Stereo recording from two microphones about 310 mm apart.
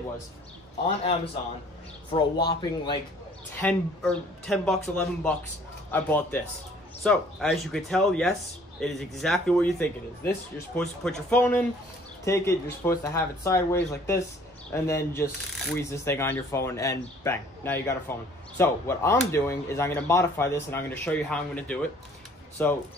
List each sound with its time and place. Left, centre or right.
0.8 s a man's voice: centre
3.6 s speech: centre